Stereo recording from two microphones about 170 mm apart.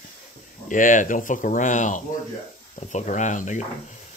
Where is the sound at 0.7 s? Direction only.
50° left (ahead or behind).